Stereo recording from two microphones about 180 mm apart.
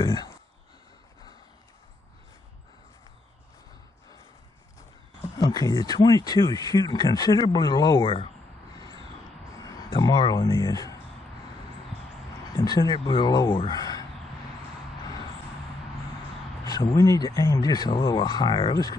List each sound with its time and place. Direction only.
0.0 s speech: 25° left (ahead or behind)
5.4 s speech: 20° left (ahead or behind)
8.7 s a sound: 20° left (ahead or behind)
9.6 s speech: 25° left (ahead or behind)
12.5 s speech: 20° left (ahead or behind)
16.6 s speech: 20° left (ahead or behind)